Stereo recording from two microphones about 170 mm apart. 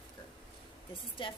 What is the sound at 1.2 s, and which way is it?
Speech, 30° left (ahead or behind).